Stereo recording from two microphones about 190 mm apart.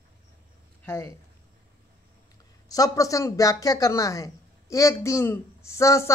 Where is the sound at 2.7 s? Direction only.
20° left (ahead or behind).